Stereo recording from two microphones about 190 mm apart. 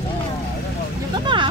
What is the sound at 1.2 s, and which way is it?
Vehicle, 25° right (ahead or behind).